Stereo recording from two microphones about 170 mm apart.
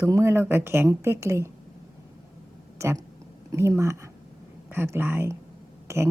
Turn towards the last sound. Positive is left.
turn(degrees=-15)  # may be behind; listen again after turning